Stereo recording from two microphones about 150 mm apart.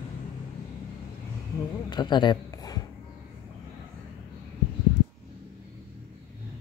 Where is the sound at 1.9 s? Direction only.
30° left (ahead or behind).